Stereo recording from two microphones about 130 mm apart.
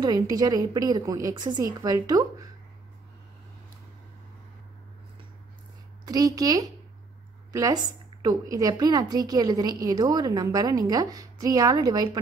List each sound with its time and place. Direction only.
0.0 s a woman's voice: 30° right (ahead or behind)
6.0 s a woman's voice: 30° right (ahead or behind)